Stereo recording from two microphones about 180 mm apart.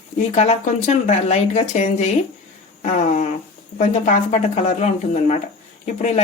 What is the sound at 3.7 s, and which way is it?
Speech, 45° left (ahead or behind).